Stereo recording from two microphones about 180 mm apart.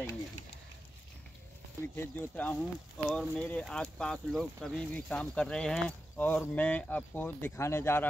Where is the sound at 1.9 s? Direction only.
10° left (ahead or behind).